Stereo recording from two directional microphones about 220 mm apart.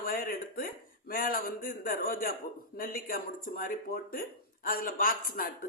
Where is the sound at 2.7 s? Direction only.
40° left (ahead or behind).